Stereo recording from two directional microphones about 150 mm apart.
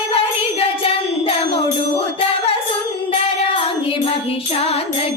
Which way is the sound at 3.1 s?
40° left (ahead or behind).